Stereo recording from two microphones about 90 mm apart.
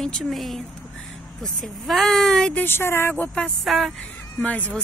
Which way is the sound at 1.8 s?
5° left (ahead or behind).